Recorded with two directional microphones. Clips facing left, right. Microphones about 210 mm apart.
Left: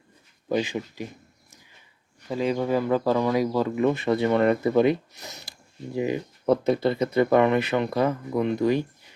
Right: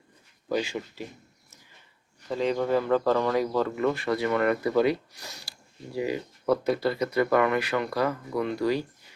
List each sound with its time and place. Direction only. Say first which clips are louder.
0.4 s speech: left 3 dB; 20° left (ahead or behind)
2.3 s speech: left 1 dB; 10° left (ahead or behind)